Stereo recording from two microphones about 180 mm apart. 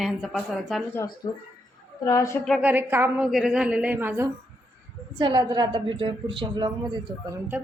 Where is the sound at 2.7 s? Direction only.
10° right (ahead or behind).